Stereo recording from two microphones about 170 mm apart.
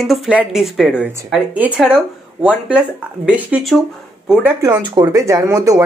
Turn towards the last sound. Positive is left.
turn(degrees=-20)  # may be behind; listen again after turning